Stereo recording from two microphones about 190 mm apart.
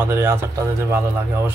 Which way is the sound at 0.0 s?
10° right (ahead or behind).